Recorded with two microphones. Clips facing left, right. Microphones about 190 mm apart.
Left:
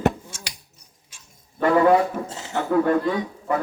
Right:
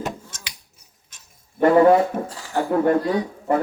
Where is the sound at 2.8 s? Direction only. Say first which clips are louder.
Right 2 dB; 35° right (ahead or behind).